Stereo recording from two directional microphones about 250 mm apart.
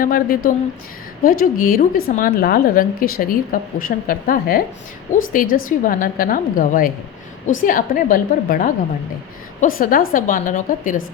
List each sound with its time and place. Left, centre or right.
0.0 s a woman's voice: left